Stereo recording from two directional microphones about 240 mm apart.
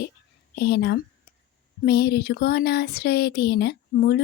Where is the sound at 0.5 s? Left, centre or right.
Left.